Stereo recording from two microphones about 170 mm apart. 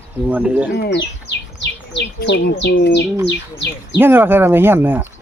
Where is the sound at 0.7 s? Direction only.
80° left.